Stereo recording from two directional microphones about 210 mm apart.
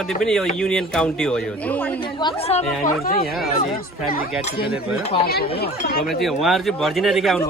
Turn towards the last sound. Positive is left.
turn(degrees=0)  # may be behind; listen again after turning